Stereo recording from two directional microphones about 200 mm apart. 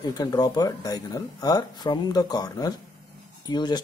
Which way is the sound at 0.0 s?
20° left (ahead or behind).